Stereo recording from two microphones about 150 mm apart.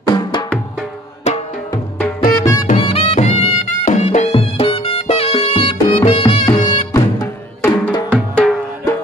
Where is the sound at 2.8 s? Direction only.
40° left (ahead or behind).